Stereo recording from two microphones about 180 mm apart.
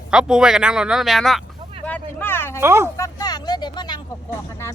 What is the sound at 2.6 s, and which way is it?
Speech, 15° right (ahead or behind).